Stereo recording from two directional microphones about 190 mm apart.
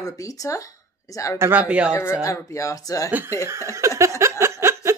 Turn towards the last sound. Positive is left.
turn(degrees=-15)  # may be behind; listen again after turning